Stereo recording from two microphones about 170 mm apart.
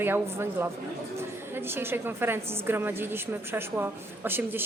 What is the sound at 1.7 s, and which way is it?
A woman's voice, 15° right (ahead or behind).